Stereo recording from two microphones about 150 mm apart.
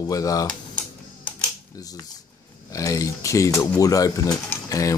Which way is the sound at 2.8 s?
20° left (ahead or behind).